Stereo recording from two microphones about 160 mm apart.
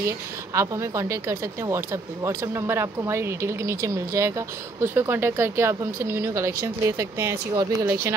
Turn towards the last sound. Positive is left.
turn(degrees=-20)  # may be behind; listen again after turning